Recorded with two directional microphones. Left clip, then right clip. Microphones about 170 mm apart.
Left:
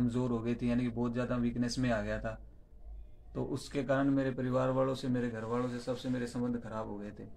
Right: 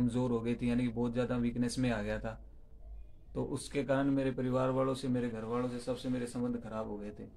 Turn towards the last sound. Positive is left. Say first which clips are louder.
# even
turn(degrees=-10)  # may be behind; listen again after turning